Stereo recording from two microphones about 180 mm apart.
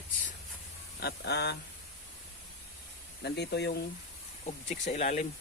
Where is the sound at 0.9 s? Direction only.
65° left (ahead or behind).